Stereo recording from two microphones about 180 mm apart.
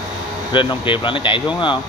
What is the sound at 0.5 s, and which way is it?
Speech, 30° left (ahead or behind).